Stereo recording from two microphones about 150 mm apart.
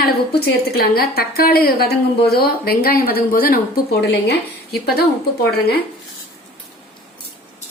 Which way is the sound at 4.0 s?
90° left.